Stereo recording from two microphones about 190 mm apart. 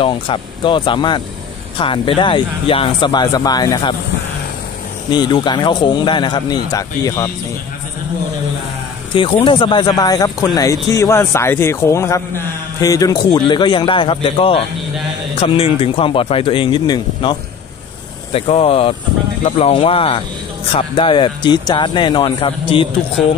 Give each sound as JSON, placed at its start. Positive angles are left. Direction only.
{"t": 0.0, "sound": "speech", "side_deg": 25}
{"t": 5.1, "sound": "speech", "side_deg": 25}
{"t": 9.1, "sound": "speech", "side_deg": 25}